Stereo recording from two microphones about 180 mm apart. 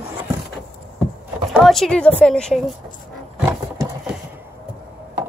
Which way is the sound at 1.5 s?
Centre (ahead or behind).